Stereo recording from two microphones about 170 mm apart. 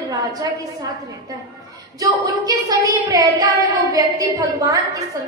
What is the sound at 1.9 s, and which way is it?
A woman's voice, 20° right (ahead or behind).